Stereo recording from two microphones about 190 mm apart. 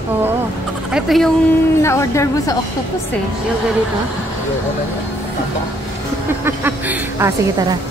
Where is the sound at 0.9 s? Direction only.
Centre (ahead or behind).